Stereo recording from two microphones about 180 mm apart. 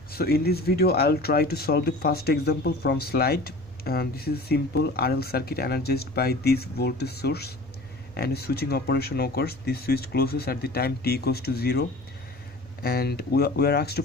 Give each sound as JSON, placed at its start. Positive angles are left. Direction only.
{"t": 0.1, "sound": "speech", "side_deg": 60}
{"t": 12.8, "sound": "speech", "side_deg": 60}